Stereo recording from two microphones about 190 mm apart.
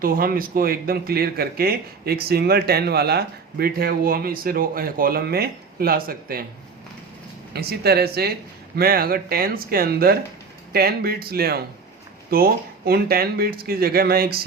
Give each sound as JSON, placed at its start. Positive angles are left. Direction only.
{"t": 0.0, "sound": "speech", "side_deg": -50}
{"t": 7.5, "sound": "speech", "side_deg": -55}